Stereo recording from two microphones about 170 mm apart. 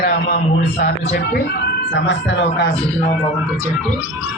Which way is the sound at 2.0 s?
90° left.